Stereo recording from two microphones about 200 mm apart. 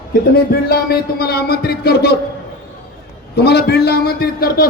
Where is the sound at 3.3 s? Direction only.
55° left (ahead or behind).